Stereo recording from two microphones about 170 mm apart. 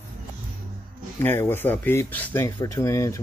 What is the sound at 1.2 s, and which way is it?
Speech, 15° left (ahead or behind).